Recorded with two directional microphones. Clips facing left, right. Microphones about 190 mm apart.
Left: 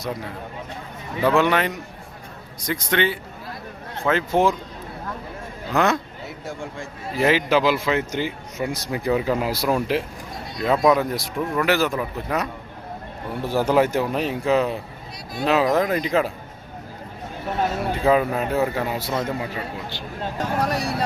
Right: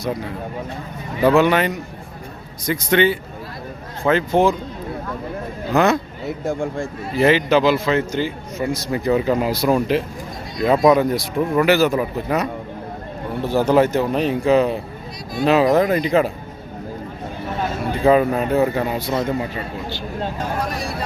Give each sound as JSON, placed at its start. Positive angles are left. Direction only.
{"t": 1.2, "sound": "speech", "side_deg": -5}
{"t": 5.7, "sound": "speech", "side_deg": -5}
{"t": 6.4, "sound": "speech", "side_deg": -50}
{"t": 7.2, "sound": "speech", "side_deg": 5}
{"t": 13.5, "sound": "speech", "side_deg": 10}
{"t": 18.0, "sound": "speech", "side_deg": 0}
{"t": 20.6, "sound": "speech", "side_deg": 70}